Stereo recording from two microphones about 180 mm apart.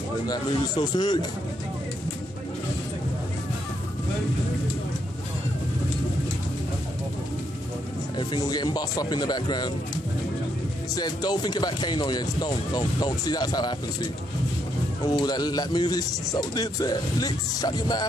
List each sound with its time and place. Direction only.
0.3 s speech: 25° left (ahead or behind)
8.2 s speech: 25° left (ahead or behind)
11.0 s speech: 20° left (ahead or behind)
15.0 s speech: 20° left (ahead or behind)